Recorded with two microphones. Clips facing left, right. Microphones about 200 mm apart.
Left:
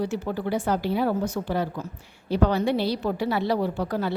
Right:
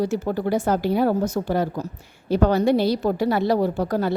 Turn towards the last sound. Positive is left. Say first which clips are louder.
# right 4 dB
turn(degrees=-45)  # may be behind; listen again after turning